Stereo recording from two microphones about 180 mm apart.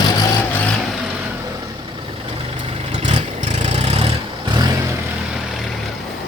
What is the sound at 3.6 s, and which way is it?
Vehicle, 35° right (ahead or behind).